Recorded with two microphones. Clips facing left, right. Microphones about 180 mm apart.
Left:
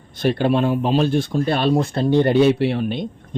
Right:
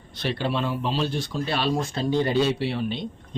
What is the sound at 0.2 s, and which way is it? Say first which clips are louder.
Speech: left 8 dB; 50° left (ahead or behind).